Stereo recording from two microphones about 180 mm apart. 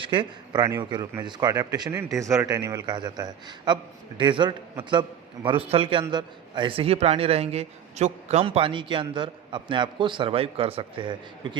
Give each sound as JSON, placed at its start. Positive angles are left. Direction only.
{"t": 0.0, "sound": "a man's voice", "side_deg": -25}